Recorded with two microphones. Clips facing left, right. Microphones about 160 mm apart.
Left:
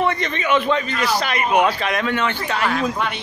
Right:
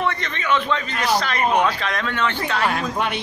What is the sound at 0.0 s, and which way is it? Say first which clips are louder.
A man's voice: left 4 dB; 15° left (ahead or behind).